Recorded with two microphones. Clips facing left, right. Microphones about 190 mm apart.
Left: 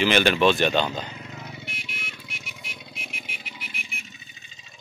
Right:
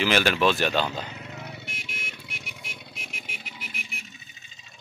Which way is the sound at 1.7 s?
45° right (ahead or behind).